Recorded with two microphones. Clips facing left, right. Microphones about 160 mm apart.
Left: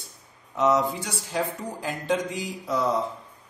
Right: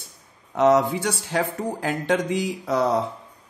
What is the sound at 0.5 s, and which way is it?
Speech, 65° right (ahead or behind).